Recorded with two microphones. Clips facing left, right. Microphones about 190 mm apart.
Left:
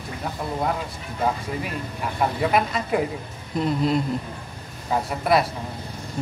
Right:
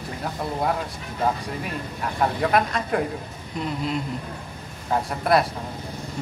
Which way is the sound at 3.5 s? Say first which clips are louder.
Left 5 dB; 40° left (ahead or behind).